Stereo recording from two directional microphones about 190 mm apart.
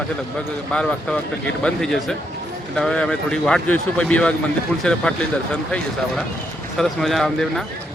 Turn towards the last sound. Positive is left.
turn(degrees=0)  # may be behind; listen again after turning